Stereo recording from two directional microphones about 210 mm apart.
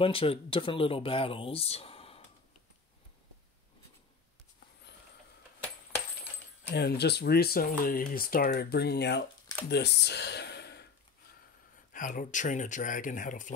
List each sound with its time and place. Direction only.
0.0 s speech: 25° left (ahead or behind)
4.9 s a sound: 55° left (ahead or behind)
6.7 s speech: 50° left (ahead or behind)
11.9 s speech: 40° left (ahead or behind)